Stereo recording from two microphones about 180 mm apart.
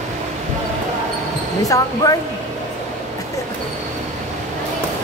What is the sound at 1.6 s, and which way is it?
Speech, 20° left (ahead or behind).